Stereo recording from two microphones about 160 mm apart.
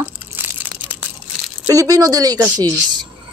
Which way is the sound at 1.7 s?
20° right (ahead or behind).